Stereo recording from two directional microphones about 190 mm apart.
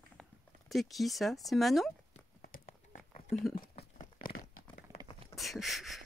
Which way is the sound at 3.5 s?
25° left (ahead or behind).